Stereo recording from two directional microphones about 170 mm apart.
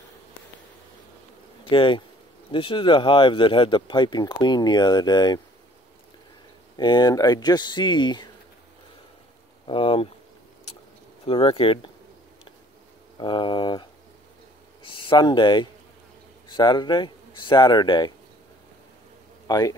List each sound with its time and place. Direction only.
1.7 s speech: 30° left (ahead or behind)
6.8 s speech: 25° left (ahead or behind)
9.7 s speech: 30° left (ahead or behind)
11.2 s speech: 30° left (ahead or behind)
13.2 s speech: 30° left (ahead or behind)
19.4 s speech: 20° left (ahead or behind)